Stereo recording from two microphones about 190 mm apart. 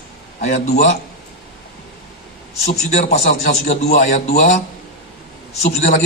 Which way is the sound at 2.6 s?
35° left (ahead or behind).